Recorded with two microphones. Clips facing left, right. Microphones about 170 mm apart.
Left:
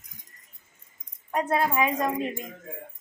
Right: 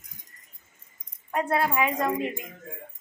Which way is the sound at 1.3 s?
20° left (ahead or behind).